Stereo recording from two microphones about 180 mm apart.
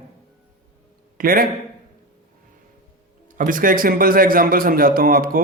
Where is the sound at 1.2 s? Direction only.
50° right (ahead or behind).